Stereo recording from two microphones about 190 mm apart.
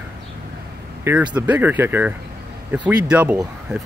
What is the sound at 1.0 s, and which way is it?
Speech, 5° right (ahead or behind).